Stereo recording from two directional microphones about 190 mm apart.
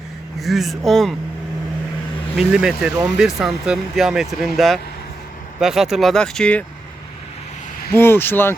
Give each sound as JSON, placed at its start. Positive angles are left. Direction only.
{"t": 0.3, "sound": "speech", "side_deg": 0}
{"t": 2.3, "sound": "speech", "side_deg": -5}
{"t": 7.9, "sound": "speech", "side_deg": 10}